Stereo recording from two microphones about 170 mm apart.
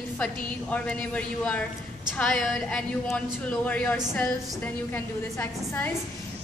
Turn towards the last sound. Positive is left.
turn(degrees=10)  # may be behind; listen again after turning